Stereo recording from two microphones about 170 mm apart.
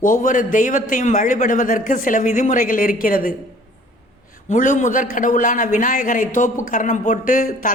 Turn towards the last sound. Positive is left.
turn(degrees=50)  # may be behind; listen again after turning